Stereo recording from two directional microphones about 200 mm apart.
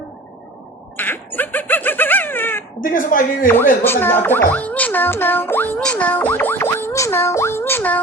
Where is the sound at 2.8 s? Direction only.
45° left (ahead or behind).